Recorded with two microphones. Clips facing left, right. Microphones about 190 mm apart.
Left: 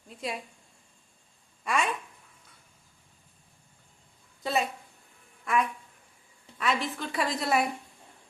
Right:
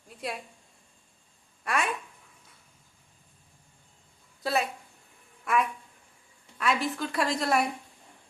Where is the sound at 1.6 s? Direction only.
Centre (ahead or behind).